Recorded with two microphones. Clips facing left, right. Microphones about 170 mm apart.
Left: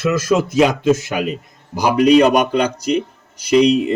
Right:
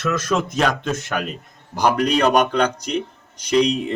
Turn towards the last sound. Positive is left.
turn(degrees=5)  # may be behind; listen again after turning